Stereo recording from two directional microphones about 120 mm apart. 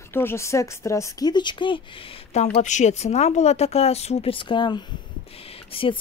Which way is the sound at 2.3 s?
75° left (ahead or behind).